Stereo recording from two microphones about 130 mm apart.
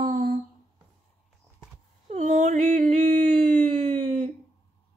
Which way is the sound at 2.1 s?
65° right (ahead or behind).